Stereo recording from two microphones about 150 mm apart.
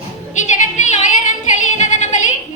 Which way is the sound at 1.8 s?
55° left (ahead or behind).